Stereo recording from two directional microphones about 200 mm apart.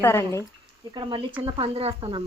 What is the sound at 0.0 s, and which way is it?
Speech, 15° left (ahead or behind).